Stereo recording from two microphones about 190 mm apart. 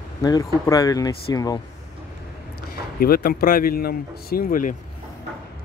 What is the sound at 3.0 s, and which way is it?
Speech, 50° left (ahead or behind).